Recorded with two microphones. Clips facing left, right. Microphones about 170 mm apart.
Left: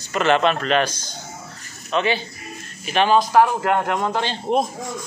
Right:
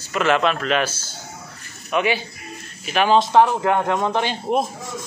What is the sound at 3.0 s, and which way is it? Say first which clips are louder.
A man's voice: right 1 dB; 20° right (ahead or behind).